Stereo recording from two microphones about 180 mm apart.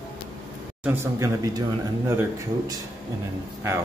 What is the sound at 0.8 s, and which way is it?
Speech, 15° right (ahead or behind).